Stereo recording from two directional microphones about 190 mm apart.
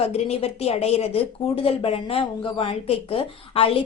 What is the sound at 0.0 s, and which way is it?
A woman's voice, 30° left (ahead or behind).